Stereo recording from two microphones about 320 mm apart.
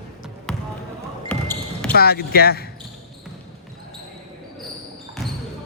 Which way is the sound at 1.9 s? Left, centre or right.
Left.